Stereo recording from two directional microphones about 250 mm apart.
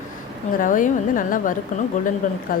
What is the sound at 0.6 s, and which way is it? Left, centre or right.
Speech, left.